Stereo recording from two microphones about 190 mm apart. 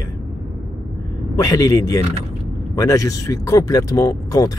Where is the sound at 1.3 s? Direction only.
20° left (ahead or behind).